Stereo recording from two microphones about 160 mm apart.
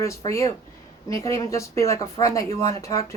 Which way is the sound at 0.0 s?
20° left (ahead or behind).